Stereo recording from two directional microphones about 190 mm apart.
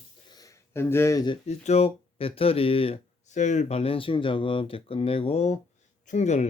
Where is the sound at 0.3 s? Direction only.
20° left (ahead or behind).